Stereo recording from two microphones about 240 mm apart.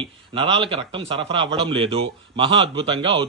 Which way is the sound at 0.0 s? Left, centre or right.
Right.